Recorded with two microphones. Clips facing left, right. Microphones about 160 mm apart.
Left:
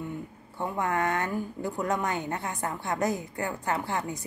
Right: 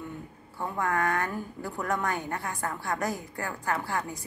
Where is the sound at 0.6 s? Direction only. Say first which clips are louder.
Left 1 dB; 20° left (ahead or behind).